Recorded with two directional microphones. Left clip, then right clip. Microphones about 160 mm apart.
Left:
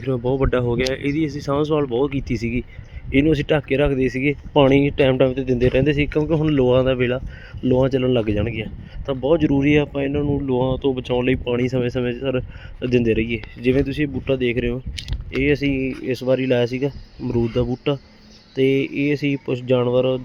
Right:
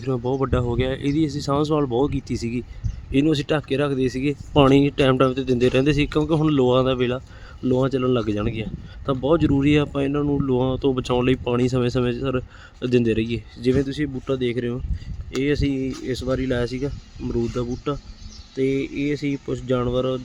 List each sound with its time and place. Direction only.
0.0 s speech: centre (ahead or behind)
4.5 s speech: 15° right (ahead or behind)
13.6 s speech: 5° left (ahead or behind)